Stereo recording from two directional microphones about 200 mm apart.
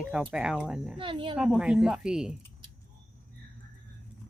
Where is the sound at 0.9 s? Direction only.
25° right (ahead or behind).